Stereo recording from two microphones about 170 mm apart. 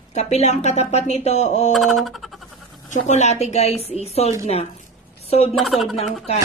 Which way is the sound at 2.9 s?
45° left (ahead or behind).